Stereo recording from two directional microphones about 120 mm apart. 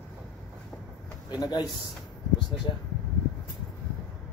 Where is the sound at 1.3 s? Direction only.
30° left (ahead or behind).